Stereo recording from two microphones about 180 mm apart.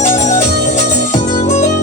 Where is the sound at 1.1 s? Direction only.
40° left (ahead or behind).